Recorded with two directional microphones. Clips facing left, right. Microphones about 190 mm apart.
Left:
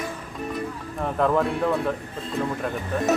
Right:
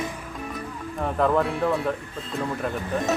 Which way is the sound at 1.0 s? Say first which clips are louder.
Even; centre (ahead or behind).